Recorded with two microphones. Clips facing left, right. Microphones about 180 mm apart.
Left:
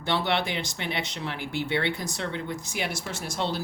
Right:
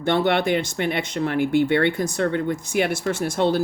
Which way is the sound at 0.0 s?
50° right (ahead or behind).